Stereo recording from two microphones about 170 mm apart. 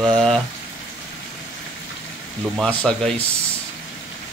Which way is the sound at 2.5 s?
5° left (ahead or behind).